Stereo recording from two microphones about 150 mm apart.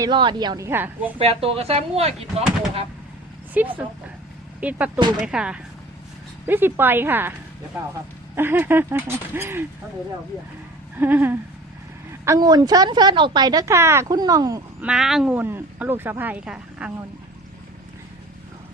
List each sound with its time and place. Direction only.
0.0 s speech: 30° right (ahead or behind); by 1.1 s 15° right (ahead or behind)
1.2 s speech: 40° right (ahead or behind)
3.6 s speech: 10° right (ahead or behind)
4.9 s speech: 30° right (ahead or behind)
5.2 s speech: 5° right (ahead or behind)
8.4 s speech: 15° right (ahead or behind)
10.9 s speech: 15° right (ahead or behind)
12.2 s speech: 25° right (ahead or behind)
14.8 s speech: 5° right (ahead or behind)